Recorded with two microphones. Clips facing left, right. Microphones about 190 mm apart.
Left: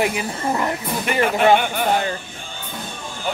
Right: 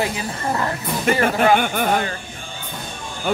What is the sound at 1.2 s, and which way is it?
Speech, 50° right (ahead or behind).